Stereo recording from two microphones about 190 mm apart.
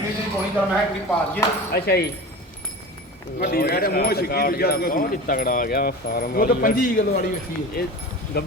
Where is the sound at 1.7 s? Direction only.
55° left (ahead or behind).